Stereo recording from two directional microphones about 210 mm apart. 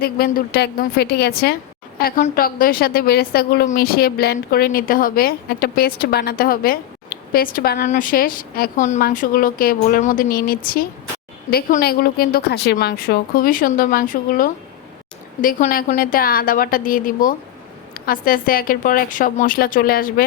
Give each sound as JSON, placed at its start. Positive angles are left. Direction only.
{"t": 0.0, "sound": "a woman's voice", "side_deg": 45}